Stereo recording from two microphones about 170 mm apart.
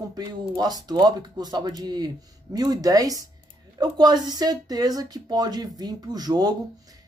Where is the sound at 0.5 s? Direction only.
25° right (ahead or behind).